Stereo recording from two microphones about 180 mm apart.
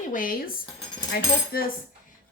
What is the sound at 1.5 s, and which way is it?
Cutlery, 55° left (ahead or behind).